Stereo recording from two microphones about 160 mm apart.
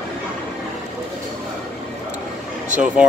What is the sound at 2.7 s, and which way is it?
Speech, 50° right (ahead or behind).